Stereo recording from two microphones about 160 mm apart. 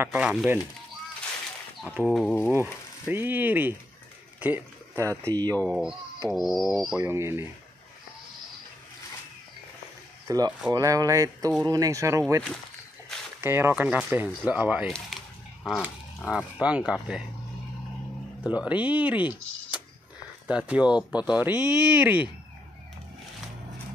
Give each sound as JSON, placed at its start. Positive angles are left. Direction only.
{"t": 0.0, "sound": "speech", "side_deg": -10}
{"t": 2.0, "sound": "speech", "side_deg": 0}
{"t": 2.5, "sound": "speech", "side_deg": -15}
{"t": 4.4, "sound": "a sound", "side_deg": -10}
{"t": 5.3, "sound": "speech", "side_deg": -25}
{"t": 5.6, "sound": "speech", "side_deg": 0}
{"t": 7.0, "sound": "speech", "side_deg": -15}
{"t": 10.2, "sound": "speech", "side_deg": -20}
{"t": 15.1, "sound": "a sound", "side_deg": 0}
{"t": 15.6, "sound": "dog", "side_deg": -5}
{"t": 16.3, "sound": "speech", "side_deg": -5}
{"t": 18.4, "sound": "speech", "side_deg": -10}